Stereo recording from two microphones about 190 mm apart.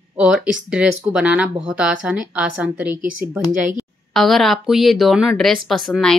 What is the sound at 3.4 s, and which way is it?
Speech, 20° left (ahead or behind).